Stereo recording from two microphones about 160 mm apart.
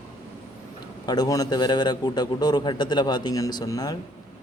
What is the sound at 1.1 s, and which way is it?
A man's voice, 25° left (ahead or behind).